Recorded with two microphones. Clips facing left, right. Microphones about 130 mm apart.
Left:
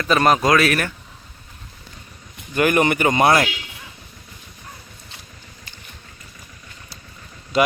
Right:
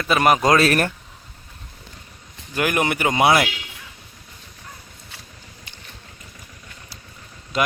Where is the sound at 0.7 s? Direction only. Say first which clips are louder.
Right 2 dB; 40° right (ahead or behind).